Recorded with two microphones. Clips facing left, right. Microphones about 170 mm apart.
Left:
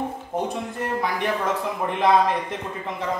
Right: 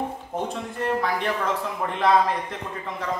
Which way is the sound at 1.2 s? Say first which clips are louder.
Left 2 dB; 15° left (ahead or behind).